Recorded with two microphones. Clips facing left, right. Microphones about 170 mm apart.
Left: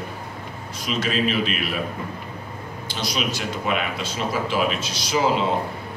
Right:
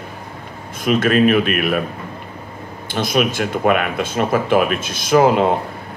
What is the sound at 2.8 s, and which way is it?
Speech, 55° right (ahead or behind).